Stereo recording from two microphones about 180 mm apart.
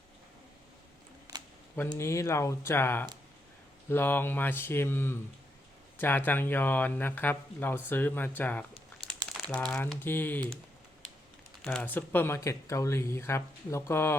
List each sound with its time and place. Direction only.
1.3 s camera: 20° right (ahead or behind)
2.0 s speech: 15° left (ahead or behind)
11.6 s speech: 5° left (ahead or behind)